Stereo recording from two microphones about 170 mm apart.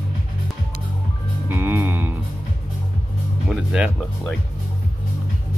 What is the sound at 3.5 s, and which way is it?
Speech, 5° right (ahead or behind).